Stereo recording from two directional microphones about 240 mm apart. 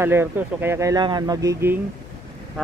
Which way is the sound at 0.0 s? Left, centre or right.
Centre.